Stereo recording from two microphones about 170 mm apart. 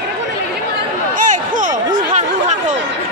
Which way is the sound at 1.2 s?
50° right (ahead or behind).